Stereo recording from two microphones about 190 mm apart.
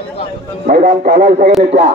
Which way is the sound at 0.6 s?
40° right (ahead or behind).